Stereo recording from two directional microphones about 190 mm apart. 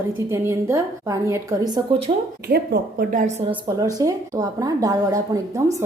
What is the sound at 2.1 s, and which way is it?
Speech, 30° right (ahead or behind).